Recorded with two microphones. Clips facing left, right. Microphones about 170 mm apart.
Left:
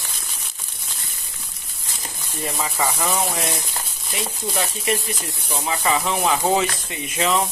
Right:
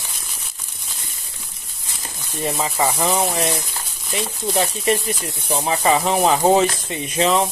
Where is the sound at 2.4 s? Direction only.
25° right (ahead or behind).